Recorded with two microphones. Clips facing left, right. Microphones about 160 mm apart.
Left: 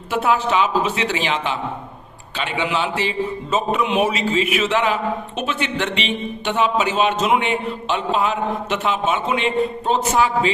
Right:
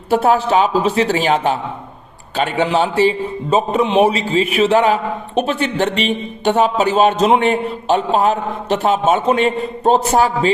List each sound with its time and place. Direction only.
0.1 s a man's voice: 35° right (ahead or behind)